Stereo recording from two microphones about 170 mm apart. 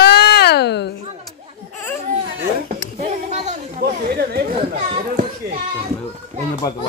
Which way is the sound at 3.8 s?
65° right (ahead or behind).